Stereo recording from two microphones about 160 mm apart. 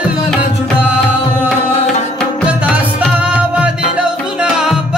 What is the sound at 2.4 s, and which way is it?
Music, 10° right (ahead or behind).